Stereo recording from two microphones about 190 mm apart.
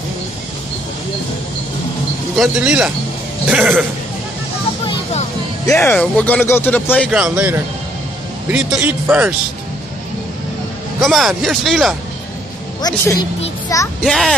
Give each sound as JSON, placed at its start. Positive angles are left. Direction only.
{"t": 2.3, "sound": "speech", "side_deg": 0}
{"t": 5.7, "sound": "speech", "side_deg": 10}
{"t": 7.1, "sound": "speech", "side_deg": -5}
{"t": 11.0, "sound": "speech", "side_deg": 0}
{"t": 12.8, "sound": "speech", "side_deg": 15}
{"t": 14.0, "sound": "speech", "side_deg": 0}